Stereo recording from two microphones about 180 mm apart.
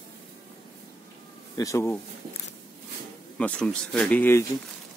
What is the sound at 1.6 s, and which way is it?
Speech, 15° left (ahead or behind).